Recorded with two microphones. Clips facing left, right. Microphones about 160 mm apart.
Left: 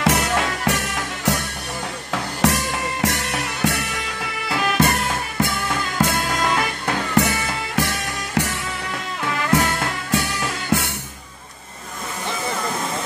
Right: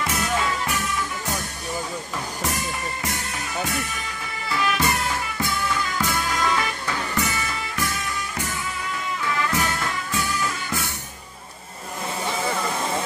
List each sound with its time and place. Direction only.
0.0 s music: 75° left (ahead or behind)
6.0 s music: 65° left (ahead or behind)